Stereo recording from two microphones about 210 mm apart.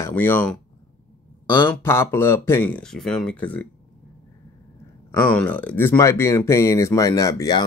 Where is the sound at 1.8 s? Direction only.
10° left (ahead or behind).